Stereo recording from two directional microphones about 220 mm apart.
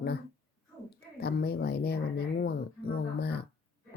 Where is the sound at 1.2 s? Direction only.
45° left (ahead or behind).